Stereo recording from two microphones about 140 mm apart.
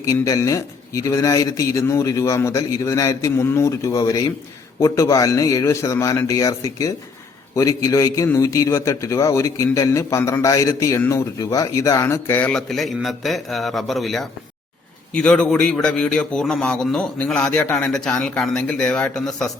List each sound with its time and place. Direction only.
0.0 s a man's voice: 25° left (ahead or behind); by 19.5 s 5° left (ahead or behind)